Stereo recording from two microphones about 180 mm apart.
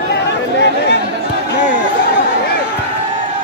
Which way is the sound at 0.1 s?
70° left (ahead or behind).